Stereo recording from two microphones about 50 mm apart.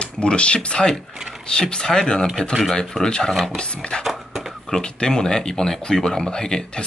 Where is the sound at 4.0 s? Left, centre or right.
Centre.